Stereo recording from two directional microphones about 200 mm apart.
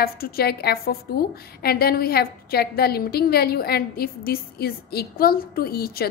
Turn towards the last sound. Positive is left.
turn(degrees=50)  # may be behind; listen again after turning